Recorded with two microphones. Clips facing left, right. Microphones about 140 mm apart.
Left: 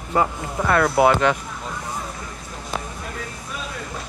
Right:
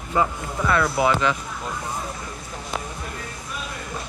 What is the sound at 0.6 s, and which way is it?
Speech, 50° left (ahead or behind).